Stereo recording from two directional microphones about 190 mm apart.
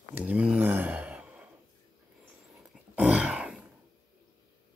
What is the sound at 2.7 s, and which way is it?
Throat clearing, 5° right (ahead or behind).